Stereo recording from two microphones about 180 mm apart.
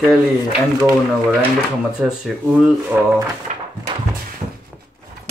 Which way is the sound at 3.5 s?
40° right (ahead or behind).